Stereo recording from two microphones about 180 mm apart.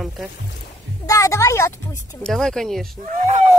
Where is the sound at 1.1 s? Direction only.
15° left (ahead or behind).